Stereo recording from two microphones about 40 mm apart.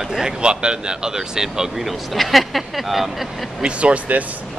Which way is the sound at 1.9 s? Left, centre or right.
Centre.